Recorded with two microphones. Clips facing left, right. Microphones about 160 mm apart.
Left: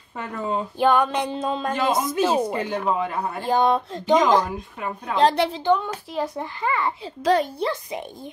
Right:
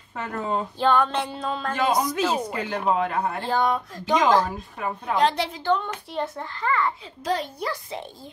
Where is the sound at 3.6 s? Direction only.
25° left (ahead or behind).